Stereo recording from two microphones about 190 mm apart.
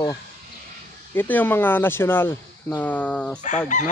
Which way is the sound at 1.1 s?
10° left (ahead or behind).